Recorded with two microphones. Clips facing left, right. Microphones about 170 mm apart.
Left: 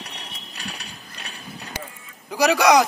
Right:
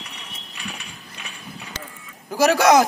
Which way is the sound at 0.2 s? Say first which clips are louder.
Even; 35° left (ahead or behind).